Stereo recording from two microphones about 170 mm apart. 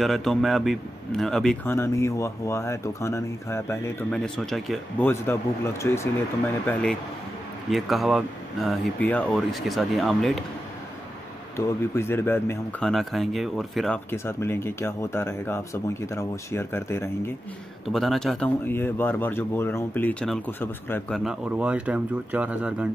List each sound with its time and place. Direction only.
0.0 s a man's voice: centre (ahead or behind)
1.7 s speech: 15° left (ahead or behind)
4.1 s a man's voice: centre (ahead or behind)
5.0 s speech: 15° left (ahead or behind)
6.6 s a man's voice: 5° left (ahead or behind)
11.5 s speech: 15° left (ahead or behind)
12.9 s a man's voice: centre (ahead or behind)
14.1 s speech: 15° left (ahead or behind)
17.8 s speech: centre (ahead or behind)
21.2 s speech: 5° right (ahead or behind)